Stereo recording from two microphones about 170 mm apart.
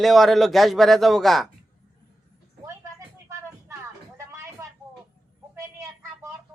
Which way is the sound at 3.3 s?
15° right (ahead or behind).